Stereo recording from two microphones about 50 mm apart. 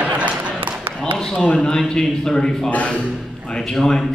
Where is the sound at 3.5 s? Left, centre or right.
Centre.